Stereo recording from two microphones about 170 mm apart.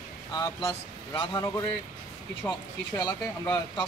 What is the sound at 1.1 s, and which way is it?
Speech, 25° left (ahead or behind).